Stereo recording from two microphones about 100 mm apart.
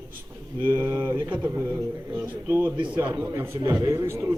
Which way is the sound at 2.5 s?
25° right (ahead or behind).